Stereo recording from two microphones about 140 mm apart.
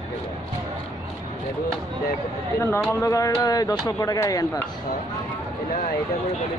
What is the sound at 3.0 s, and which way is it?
Speech, 25° left (ahead or behind).